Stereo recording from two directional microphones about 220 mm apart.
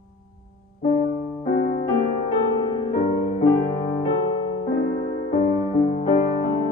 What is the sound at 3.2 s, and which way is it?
Music, 30° left (ahead or behind).